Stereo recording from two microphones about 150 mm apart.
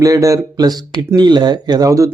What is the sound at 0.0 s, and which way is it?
Speech, 20° right (ahead or behind).